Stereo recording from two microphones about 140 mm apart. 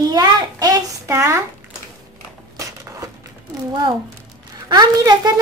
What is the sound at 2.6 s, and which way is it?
Crushing, 25° right (ahead or behind).